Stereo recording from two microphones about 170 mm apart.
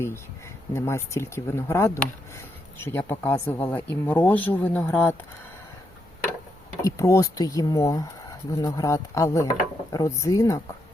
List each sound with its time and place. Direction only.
0.0 s speech: 15° left (ahead or behind)
6.8 s speech: 20° left (ahead or behind)